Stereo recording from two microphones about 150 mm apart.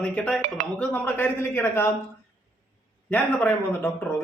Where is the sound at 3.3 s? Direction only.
10° left (ahead or behind).